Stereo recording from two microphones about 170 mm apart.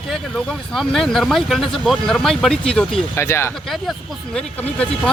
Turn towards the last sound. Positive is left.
turn(degrees=5)  # may be behind; listen again after turning